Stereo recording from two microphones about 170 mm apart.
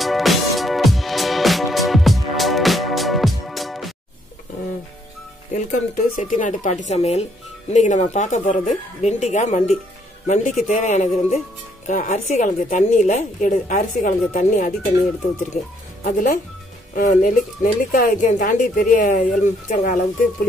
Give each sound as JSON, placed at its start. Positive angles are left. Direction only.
{"t": 0.0, "sound": "music", "side_deg": 0}
{"t": 5.5, "sound": "speech", "side_deg": 50}
{"t": 16.0, "sound": "speech", "side_deg": 60}
{"t": 16.9, "sound": "speech", "side_deg": 50}